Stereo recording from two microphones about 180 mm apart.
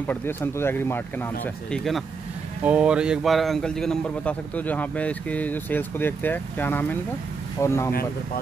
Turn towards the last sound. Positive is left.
turn(degrees=15)  # may be behind; listen again after turning